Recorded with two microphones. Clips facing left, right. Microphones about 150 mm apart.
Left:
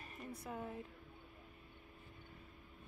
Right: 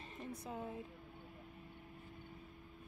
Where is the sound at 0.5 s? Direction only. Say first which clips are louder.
Even; 15° right (ahead or behind).